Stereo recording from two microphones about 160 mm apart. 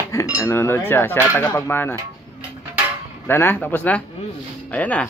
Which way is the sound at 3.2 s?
15° left (ahead or behind).